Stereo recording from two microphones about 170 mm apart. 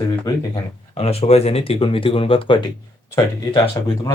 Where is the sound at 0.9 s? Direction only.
35° left (ahead or behind).